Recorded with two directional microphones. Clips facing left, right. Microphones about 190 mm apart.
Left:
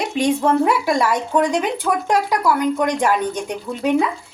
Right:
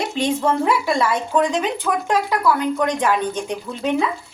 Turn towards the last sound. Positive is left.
turn(degrees=10)  # may be behind; listen again after turning